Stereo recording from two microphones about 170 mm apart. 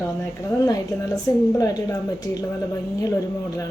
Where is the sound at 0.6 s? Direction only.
20° left (ahead or behind).